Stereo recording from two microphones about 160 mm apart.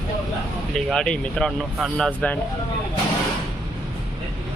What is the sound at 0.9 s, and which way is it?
Speech, 5° left (ahead or behind).